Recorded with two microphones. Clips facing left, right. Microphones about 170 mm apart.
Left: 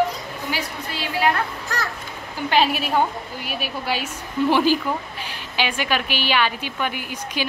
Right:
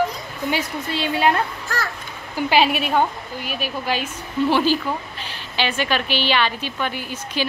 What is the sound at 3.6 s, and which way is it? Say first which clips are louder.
A woman's voice: right 1 dB; 10° left (ahead or behind).